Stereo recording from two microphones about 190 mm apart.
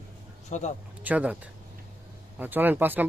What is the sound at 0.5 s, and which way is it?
Speech, 40° left (ahead or behind).